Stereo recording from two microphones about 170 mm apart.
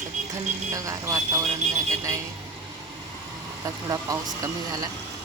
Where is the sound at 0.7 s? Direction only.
20° right (ahead or behind).